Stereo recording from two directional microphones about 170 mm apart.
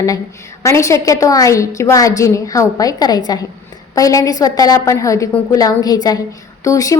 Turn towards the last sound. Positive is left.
turn(degrees=20)  # may be behind; listen again after turning